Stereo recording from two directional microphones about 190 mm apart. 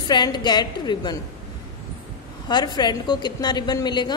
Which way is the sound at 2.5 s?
25° left (ahead or behind).